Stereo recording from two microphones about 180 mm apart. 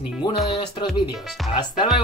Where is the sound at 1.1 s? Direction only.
Centre (ahead or behind).